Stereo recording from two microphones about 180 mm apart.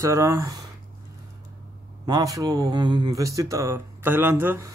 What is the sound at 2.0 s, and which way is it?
Speech, 20° right (ahead or behind).